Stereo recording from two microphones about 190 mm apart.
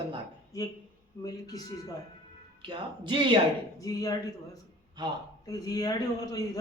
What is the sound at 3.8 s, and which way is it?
Speech, 20° left (ahead or behind).